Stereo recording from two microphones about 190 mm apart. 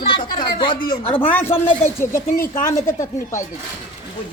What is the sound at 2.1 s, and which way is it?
Speech, 45° left (ahead or behind).